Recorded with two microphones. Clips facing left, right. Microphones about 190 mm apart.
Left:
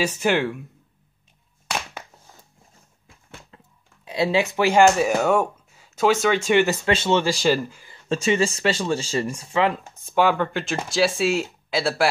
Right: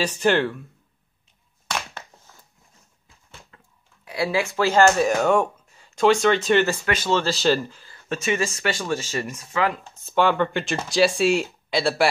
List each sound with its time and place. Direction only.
0.0 s speech: 10° left (ahead or behind)
3.5 s speech: 20° left (ahead or behind)
6.9 s speech: 25° left (ahead or behind)
7.9 s speech: 30° left (ahead or behind)
10.0 s speech: 5° left (ahead or behind)